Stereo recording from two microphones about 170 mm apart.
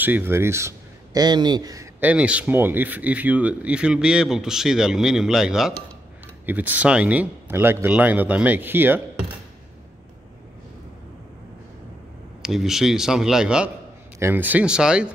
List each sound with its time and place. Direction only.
0.0 s speech: 10° right (ahead or behind)
2.0 s a man's voice: 10° right (ahead or behind)
12.4 s a man's voice: centre (ahead or behind)